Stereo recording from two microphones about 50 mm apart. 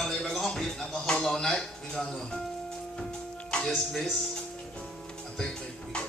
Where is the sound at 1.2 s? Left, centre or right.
Centre.